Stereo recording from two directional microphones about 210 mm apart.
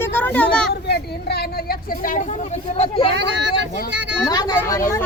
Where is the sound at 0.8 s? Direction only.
50° left (ahead or behind).